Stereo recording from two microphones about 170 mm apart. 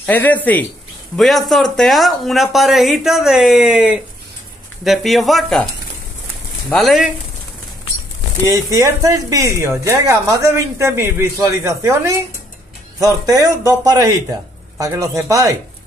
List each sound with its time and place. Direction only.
0.0 s speech: 10° left (ahead or behind)
6.7 s speech: centre (ahead or behind)
8.5 s speech: 20° right (ahead or behind)